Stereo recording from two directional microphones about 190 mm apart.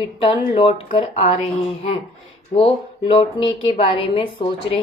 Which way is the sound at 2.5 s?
30° left (ahead or behind).